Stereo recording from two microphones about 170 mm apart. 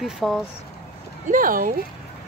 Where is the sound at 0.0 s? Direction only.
Centre (ahead or behind).